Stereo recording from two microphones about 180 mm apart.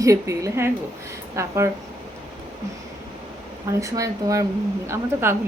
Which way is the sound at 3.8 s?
20° right (ahead or behind).